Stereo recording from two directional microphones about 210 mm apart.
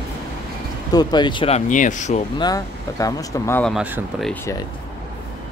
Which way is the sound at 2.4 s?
15° left (ahead or behind).